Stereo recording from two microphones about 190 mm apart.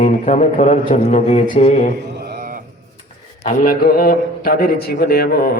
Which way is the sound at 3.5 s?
50° left (ahead or behind).